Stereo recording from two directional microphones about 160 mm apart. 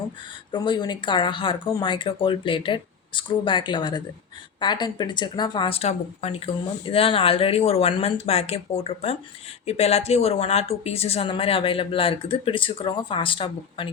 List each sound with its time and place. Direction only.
0.5 s speech: 30° left (ahead or behind)